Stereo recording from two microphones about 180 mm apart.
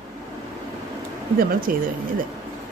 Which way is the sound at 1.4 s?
55° right (ahead or behind).